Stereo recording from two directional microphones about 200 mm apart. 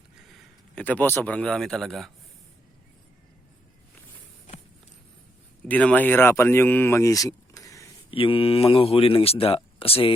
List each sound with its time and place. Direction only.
0.8 s speech: 10° left (ahead or behind)
5.6 s speech: 5° left (ahead or behind)
8.1 s speech: 25° left (ahead or behind)